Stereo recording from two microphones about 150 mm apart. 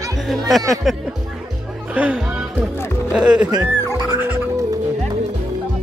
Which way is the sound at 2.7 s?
15° left (ahead or behind).